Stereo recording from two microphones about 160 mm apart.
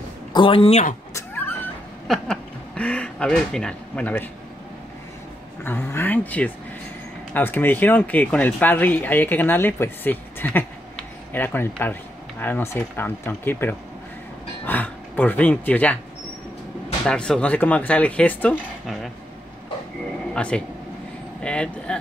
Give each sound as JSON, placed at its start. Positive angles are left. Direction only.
{"t": 0.3, "sound": "speech", "side_deg": 30}
{"t": 1.1, "sound": "a sound", "side_deg": 10}
{"t": 2.0, "sound": "speech", "side_deg": 5}
{"t": 5.6, "sound": "speech", "side_deg": 15}
{"t": 17.0, "sound": "speech", "side_deg": 5}
{"t": 20.3, "sound": "speech", "side_deg": 5}